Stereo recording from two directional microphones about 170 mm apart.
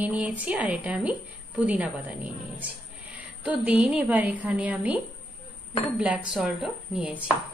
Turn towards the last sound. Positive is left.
turn(degrees=-5)  # may be behind; listen again after turning